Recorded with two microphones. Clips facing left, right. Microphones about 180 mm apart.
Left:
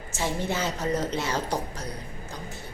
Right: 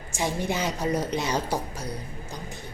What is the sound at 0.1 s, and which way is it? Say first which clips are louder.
A woman's voice: right 1 dB; 15° right (ahead or behind).